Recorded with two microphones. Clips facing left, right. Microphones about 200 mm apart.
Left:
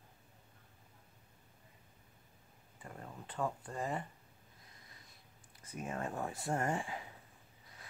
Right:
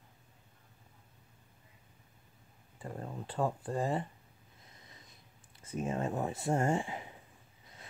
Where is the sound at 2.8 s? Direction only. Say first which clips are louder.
Right 8 dB; 35° right (ahead or behind).